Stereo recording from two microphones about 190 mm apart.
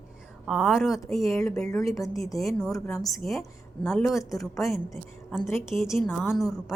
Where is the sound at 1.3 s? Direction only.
15° left (ahead or behind).